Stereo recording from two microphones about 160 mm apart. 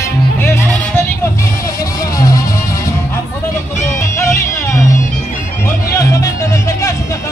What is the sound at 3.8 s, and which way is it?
Music, 15° left (ahead or behind).